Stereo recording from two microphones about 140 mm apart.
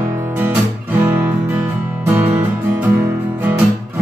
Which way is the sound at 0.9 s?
15° right (ahead or behind).